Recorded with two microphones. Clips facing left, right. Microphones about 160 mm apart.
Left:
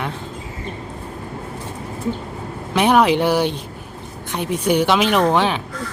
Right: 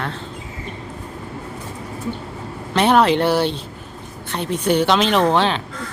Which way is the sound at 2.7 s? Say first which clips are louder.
Even; 10° left (ahead or behind).